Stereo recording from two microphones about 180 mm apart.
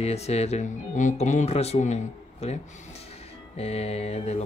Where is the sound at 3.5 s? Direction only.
35° left (ahead or behind).